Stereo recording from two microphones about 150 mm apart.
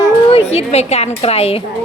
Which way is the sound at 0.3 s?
40° left (ahead or behind).